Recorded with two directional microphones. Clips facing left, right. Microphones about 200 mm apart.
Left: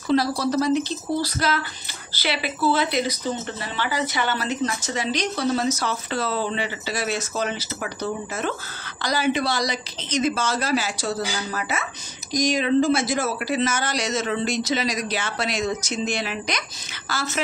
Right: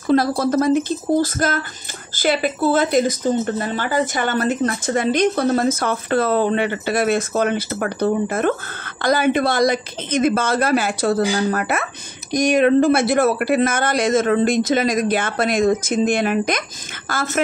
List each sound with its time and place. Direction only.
0.0 s a woman's voice: 50° right (ahead or behind)